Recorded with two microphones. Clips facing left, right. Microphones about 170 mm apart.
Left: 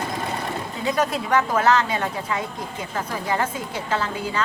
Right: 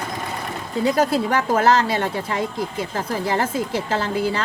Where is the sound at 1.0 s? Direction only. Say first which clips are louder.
Left 1 dB; 30° right (ahead or behind).